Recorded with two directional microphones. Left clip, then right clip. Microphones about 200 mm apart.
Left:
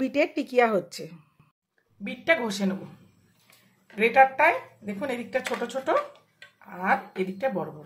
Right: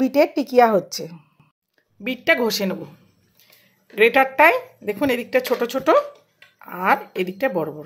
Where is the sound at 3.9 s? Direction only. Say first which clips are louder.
Right 3 dB; 45° right (ahead or behind).